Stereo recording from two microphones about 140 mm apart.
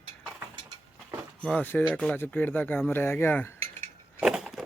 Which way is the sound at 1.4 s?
10° left (ahead or behind).